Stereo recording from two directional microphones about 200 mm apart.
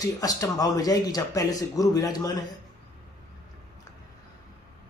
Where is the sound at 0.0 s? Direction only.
20° left (ahead or behind).